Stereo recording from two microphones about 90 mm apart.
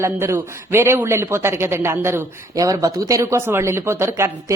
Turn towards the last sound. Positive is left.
turn(degrees=-30)  # may be behind; listen again after turning